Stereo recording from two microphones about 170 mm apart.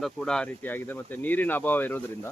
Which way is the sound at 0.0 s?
5° left (ahead or behind).